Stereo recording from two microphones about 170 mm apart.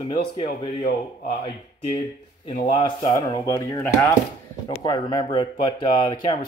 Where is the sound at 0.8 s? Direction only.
50° left (ahead or behind).